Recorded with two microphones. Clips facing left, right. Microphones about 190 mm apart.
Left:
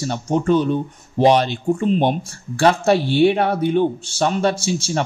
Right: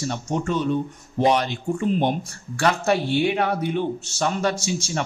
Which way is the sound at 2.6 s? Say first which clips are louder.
Left 5 dB; 30° left (ahead or behind).